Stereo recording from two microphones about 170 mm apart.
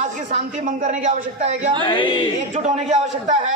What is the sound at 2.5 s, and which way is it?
Speech, 45° right (ahead or behind).